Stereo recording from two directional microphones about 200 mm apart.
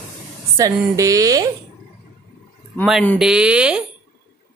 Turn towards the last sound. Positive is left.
turn(degrees=-5)  # may be behind; listen again after turning